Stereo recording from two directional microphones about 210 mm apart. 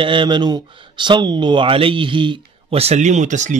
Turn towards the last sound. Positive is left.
turn(degrees=-35)  # may be behind; listen again after turning